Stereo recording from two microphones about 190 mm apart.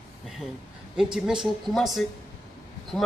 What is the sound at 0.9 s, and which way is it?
A man's voice, 5° right (ahead or behind).